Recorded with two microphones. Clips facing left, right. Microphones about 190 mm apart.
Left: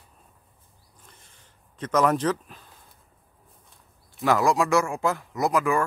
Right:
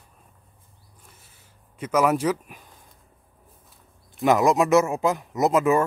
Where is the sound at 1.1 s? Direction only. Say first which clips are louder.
Left 1 dB; 5° right (ahead or behind).